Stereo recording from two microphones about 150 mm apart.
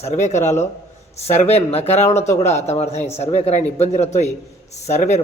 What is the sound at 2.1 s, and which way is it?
Speech, 20° left (ahead or behind).